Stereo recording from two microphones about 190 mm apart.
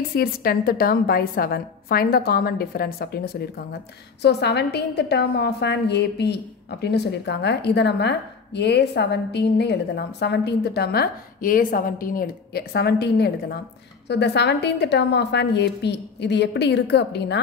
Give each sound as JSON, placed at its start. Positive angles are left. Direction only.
{"t": 0.1, "sound": "a woman's voice", "side_deg": 55}